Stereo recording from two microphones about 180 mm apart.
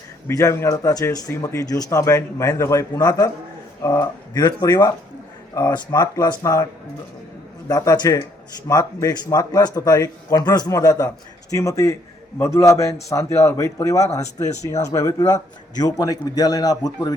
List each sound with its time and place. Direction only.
0.3 s a man's voice: 15° left (ahead or behind)
7.7 s a man's voice: 20° left (ahead or behind)